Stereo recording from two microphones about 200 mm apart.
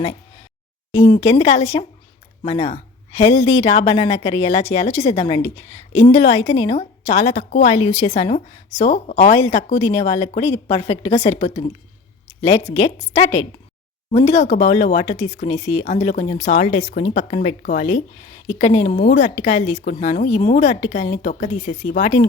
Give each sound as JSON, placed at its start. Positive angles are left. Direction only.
{"t": 0.9, "sound": "speech", "side_deg": 25}
{"t": 14.1, "sound": "speech", "side_deg": 30}